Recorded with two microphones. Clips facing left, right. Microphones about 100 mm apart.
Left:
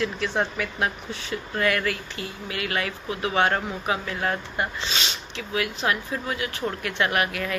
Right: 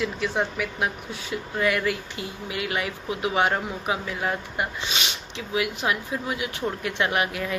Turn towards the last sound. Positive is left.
turn(degrees=-20)  # may be behind; listen again after turning